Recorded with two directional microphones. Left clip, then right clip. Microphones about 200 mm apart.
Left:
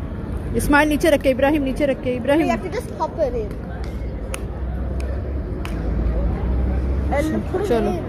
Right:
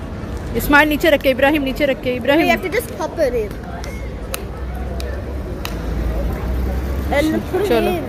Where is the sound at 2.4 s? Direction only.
60° right (ahead or behind).